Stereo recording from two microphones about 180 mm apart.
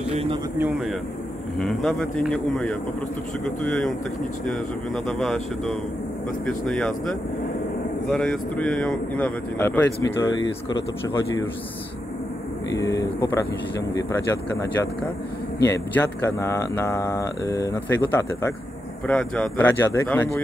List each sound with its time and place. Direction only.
0.1 s speech: 35° right (ahead or behind)
0.6 s speech: 5° right (ahead or behind); by 10.3 s 15° left (ahead or behind)
12.7 s speech: 20° left (ahead or behind)